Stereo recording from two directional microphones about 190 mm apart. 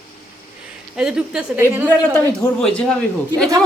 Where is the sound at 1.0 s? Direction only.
5° right (ahead or behind).